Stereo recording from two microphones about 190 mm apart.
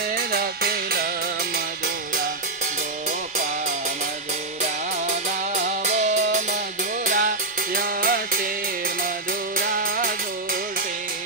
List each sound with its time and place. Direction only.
0.3 s music: 55° right (ahead or behind)
5.5 s music: 40° right (ahead or behind)
9.6 s music: 50° right (ahead or behind)